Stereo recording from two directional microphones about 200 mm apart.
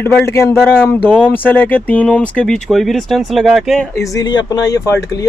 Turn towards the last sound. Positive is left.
turn(degrees=15)  # may be behind; listen again after turning